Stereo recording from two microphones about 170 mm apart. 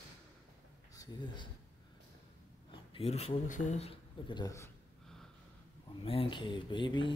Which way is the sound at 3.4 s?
45° left (ahead or behind).